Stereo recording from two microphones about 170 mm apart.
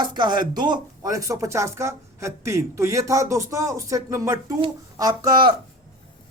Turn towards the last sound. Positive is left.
turn(degrees=-20)  # may be behind; listen again after turning